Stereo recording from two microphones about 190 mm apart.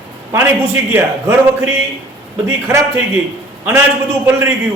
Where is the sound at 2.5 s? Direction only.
15° right (ahead or behind).